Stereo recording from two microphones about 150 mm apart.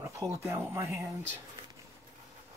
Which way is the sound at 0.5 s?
15° right (ahead or behind).